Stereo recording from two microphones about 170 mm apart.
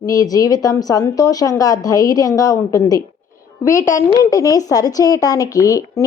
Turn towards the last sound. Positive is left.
turn(degrees=20)  # may be behind; listen again after turning